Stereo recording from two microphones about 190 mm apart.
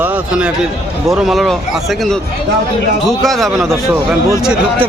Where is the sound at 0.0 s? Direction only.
5° right (ahead or behind).